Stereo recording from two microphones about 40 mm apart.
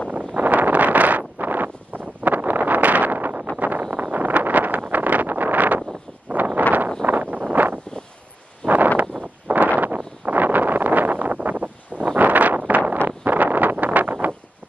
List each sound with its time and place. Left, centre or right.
0.1 s wind noise: right
3.5 s a sound: right
3.9 s vehicle: right
7.5 s wind: right
8.6 s a sound: right
9.8 s wind: right
11.3 s wind noise: right
13.2 s vehicle: right
13.7 s a sound: right